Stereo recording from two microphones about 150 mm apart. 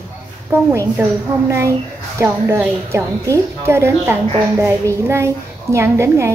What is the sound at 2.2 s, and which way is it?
A woman's voice, 20° right (ahead or behind).